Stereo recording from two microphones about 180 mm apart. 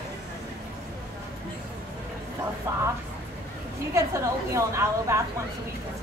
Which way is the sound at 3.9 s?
15° right (ahead or behind).